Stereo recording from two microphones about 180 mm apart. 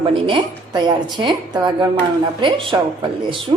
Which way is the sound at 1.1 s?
25° right (ahead or behind).